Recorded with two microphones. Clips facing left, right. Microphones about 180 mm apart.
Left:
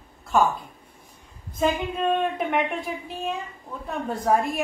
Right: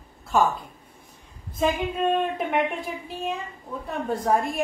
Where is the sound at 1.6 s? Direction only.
Centre (ahead or behind).